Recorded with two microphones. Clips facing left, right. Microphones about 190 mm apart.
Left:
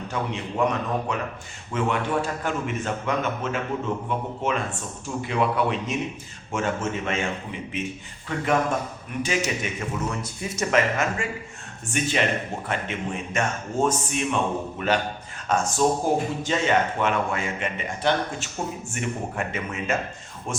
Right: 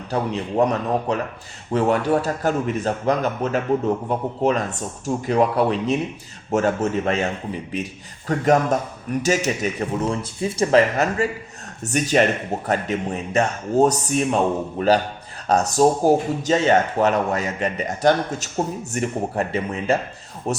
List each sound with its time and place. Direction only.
0.1 s speech: 35° right (ahead or behind)